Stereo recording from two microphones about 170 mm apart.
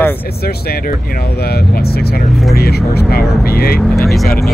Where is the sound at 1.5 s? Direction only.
65° left (ahead or behind).